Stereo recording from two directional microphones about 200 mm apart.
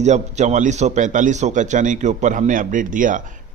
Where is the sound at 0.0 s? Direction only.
35° right (ahead or behind).